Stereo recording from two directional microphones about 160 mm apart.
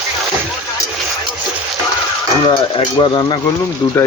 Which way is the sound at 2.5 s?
30° left (ahead or behind).